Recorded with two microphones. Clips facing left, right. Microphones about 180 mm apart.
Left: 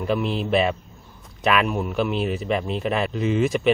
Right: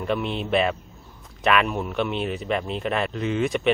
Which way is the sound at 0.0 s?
Centre (ahead or behind).